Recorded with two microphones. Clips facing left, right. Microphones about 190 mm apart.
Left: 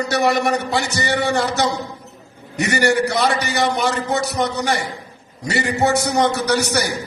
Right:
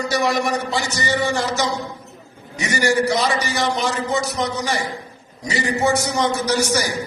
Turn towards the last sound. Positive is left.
turn(degrees=60)  # may be behind; listen again after turning